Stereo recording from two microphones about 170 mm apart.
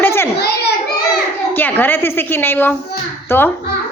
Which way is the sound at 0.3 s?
75° left (ahead or behind).